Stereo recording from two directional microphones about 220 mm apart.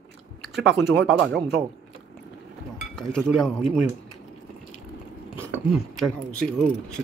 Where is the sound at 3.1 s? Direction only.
Centre (ahead or behind).